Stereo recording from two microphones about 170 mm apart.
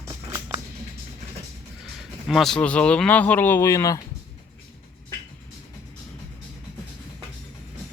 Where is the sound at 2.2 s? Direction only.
Centre (ahead or behind); by 4.0 s 20° left (ahead or behind).